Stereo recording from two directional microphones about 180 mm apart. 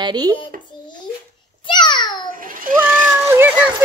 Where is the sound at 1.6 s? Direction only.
25° left (ahead or behind).